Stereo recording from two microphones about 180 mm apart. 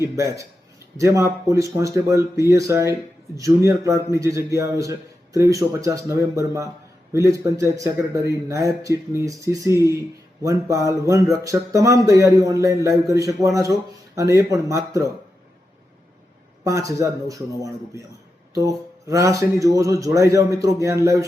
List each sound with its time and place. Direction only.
0.0 s speech: 15° right (ahead or behind)
16.6 s speech: 15° right (ahead or behind)